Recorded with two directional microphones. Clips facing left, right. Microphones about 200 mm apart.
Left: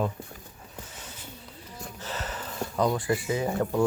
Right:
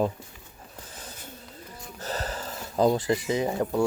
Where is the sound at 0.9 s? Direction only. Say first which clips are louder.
Right 1 dB; 35° right (ahead or behind).